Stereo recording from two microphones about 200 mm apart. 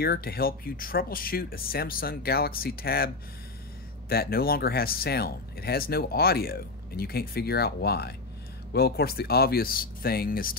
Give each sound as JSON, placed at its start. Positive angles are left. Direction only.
{"t": 0.0, "sound": "speech", "side_deg": 50}
{"t": 4.1, "sound": "speech", "side_deg": 50}